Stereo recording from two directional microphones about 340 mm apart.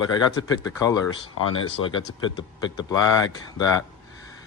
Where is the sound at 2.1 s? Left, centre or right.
Left.